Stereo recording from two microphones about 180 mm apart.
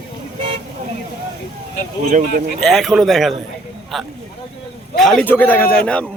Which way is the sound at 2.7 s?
Centre (ahead or behind).